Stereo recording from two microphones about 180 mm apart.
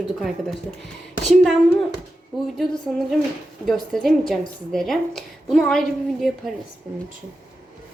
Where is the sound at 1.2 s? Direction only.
Centre (ahead or behind).